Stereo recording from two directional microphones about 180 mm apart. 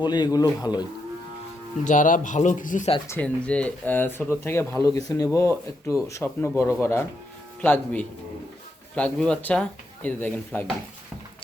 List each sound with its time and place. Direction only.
0.0 s speech: 25° left (ahead or behind)
1.8 s speech: 45° left (ahead or behind)
3.1 s speech: 5° left (ahead or behind)